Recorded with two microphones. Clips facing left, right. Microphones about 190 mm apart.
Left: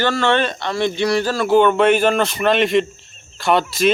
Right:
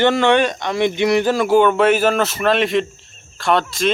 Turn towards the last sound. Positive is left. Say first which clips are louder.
# left 1 dB
turn(degrees=5)  # may be behind; listen again after turning